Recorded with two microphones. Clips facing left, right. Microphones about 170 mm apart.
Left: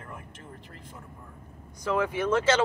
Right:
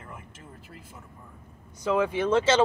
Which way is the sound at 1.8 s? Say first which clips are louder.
Right 2 dB; 20° right (ahead or behind).